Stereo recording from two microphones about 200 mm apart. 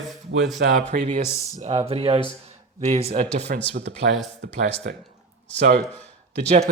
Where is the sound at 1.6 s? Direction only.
30° right (ahead or behind).